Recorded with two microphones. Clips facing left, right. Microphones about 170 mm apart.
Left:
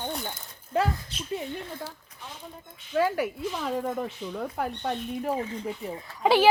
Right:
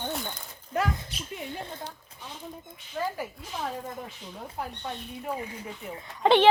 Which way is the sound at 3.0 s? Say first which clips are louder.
Left 7 dB; 80° left.